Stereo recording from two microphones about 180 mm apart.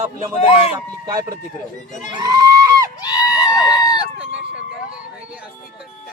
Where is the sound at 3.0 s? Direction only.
20° left (ahead or behind).